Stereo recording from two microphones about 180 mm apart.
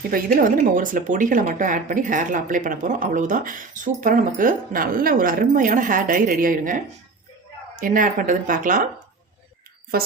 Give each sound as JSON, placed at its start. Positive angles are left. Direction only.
{"t": 0.1, "sound": "speech", "side_deg": -50}
{"t": 9.9, "sound": "a woman's voice", "side_deg": -55}